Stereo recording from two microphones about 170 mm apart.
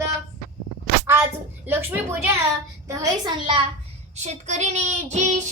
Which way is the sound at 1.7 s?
15° right (ahead or behind).